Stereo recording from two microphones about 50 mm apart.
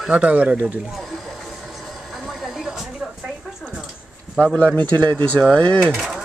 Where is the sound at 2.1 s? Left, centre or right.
Centre.